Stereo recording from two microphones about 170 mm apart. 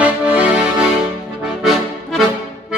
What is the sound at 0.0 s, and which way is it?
Accordion, 5° right (ahead or behind).